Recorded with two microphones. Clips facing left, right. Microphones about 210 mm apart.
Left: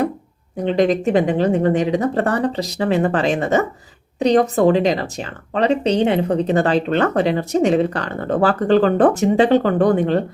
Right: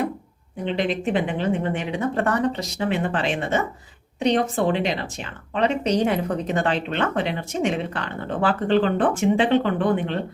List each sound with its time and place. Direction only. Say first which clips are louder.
0.5 s speech: left 7 dB; 40° left (ahead or behind)